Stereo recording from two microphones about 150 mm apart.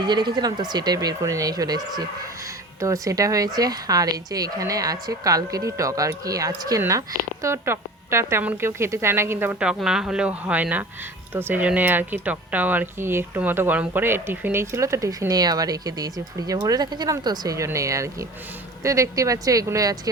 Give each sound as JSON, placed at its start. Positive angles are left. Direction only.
{"t": 0.0, "sound": "a woman's voice", "side_deg": -30}